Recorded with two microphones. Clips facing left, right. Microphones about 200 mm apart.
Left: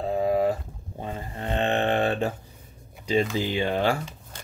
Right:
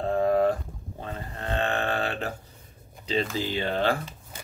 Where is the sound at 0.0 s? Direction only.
5° left (ahead or behind).